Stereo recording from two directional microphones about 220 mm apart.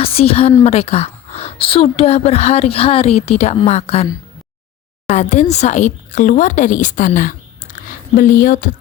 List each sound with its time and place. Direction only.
0.0 s a woman's voice: 25° left (ahead or behind)
5.1 s speech: 30° left (ahead or behind)